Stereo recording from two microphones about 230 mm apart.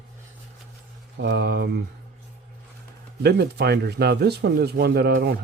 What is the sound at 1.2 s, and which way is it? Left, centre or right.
Speech, right.